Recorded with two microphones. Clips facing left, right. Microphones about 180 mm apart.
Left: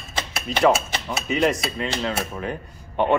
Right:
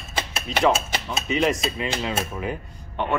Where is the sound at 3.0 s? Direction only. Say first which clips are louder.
Left 6 dB; 15° left (ahead or behind).